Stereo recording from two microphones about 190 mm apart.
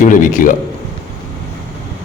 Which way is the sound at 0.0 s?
40° left (ahead or behind).